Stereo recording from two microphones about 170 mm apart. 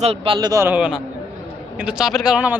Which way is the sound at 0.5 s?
15° right (ahead or behind).